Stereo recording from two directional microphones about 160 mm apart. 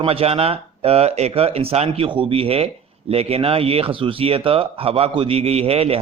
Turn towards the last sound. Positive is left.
turn(degrees=-40)  # may be behind; listen again after turning